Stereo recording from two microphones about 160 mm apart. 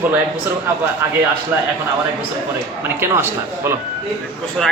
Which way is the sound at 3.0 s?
15° right (ahead or behind).